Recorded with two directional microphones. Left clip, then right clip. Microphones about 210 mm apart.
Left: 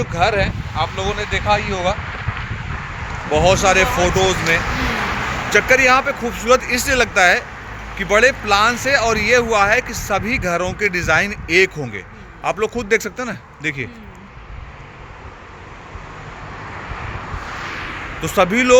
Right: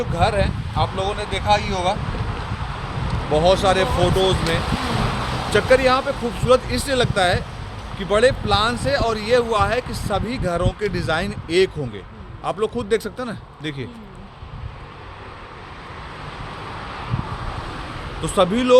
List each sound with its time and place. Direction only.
0.0 s speech: 40° left (ahead or behind)
3.3 s speech: 25° left (ahead or behind)
18.2 s speech: 10° left (ahead or behind)